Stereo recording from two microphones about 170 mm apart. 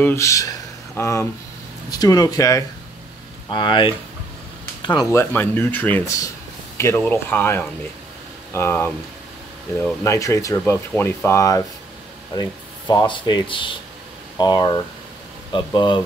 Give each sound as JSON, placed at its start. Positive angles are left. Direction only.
{"t": 0.0, "sound": "speech", "side_deg": 15}
{"t": 5.2, "sound": "speech", "side_deg": 10}
{"t": 10.0, "sound": "speech", "side_deg": 20}